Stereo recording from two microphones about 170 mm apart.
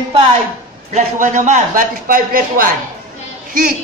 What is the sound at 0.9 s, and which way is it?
A man's voice, 45° right (ahead or behind).